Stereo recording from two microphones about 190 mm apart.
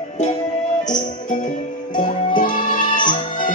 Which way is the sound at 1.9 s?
45° left (ahead or behind).